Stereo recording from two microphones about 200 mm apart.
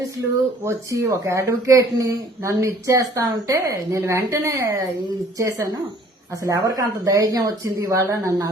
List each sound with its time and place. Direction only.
0.6 s speech: 15° right (ahead or behind)